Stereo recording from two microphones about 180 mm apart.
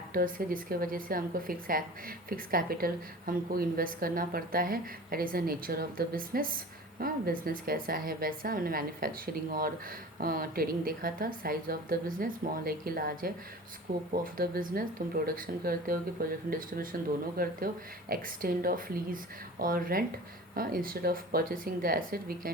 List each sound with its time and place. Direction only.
0.1 s a woman's voice: 50° right (ahead or behind)